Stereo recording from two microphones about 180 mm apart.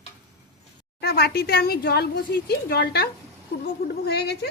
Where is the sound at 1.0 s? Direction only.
60° left (ahead or behind).